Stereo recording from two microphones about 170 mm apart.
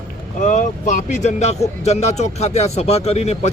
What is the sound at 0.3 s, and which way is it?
Speech, 45° left (ahead or behind).